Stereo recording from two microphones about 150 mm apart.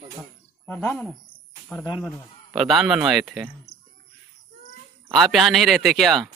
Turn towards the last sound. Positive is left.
turn(degrees=0)  # may be behind; listen again after turning